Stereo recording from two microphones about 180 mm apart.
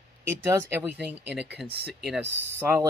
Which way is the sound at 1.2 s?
65° right (ahead or behind).